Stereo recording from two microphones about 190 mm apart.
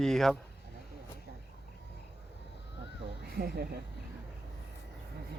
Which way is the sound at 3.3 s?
55° right (ahead or behind).